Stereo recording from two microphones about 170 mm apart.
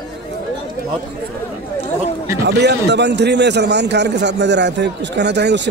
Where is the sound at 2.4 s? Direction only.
85° right.